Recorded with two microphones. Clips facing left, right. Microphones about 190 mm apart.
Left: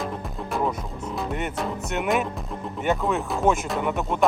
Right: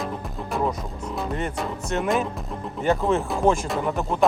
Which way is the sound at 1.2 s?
Centre (ahead or behind).